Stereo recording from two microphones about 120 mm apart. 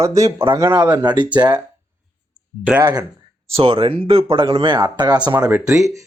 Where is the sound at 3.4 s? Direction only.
50° right (ahead or behind).